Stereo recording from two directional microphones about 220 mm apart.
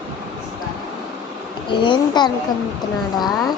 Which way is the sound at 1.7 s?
20° left (ahead or behind).